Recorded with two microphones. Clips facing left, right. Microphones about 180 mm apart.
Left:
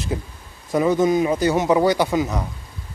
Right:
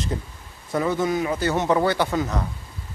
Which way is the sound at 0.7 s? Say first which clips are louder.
Left 5 dB; 15° left (ahead or behind).